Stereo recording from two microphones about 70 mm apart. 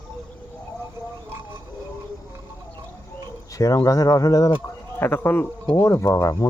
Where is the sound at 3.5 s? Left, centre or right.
Left.